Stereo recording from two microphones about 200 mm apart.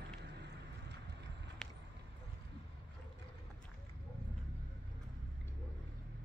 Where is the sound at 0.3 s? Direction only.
60° right (ahead or behind).